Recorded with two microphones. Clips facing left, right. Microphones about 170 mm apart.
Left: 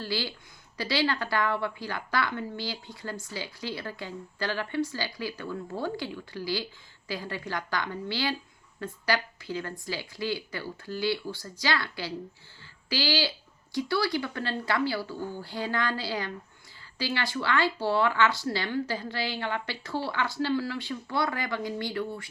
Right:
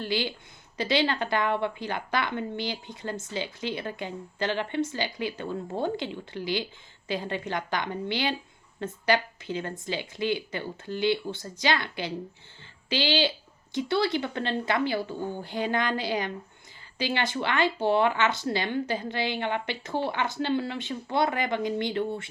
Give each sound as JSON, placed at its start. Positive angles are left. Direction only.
{"t": 0.0, "sound": "a woman's voice", "side_deg": -20}